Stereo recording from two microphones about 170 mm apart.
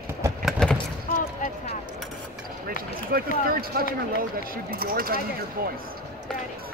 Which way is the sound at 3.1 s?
60° right (ahead or behind).